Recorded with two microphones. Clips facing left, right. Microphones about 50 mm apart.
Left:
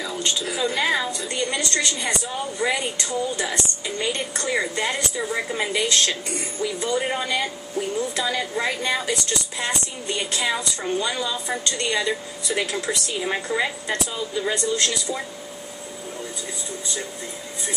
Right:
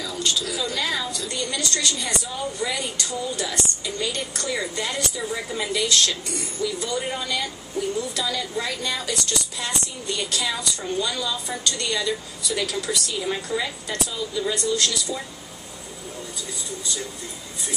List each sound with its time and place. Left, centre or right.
0.0 s a woman's voice: left